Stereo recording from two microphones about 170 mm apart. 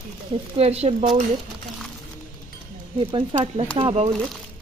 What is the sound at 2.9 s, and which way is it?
Speech, 30° right (ahead or behind).